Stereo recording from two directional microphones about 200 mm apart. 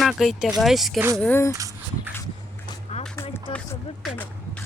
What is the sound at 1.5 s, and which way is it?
Speech, 15° right (ahead or behind).